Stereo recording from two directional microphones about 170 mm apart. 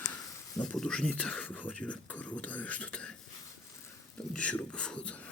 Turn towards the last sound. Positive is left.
turn(degrees=5)  # may be behind; listen again after turning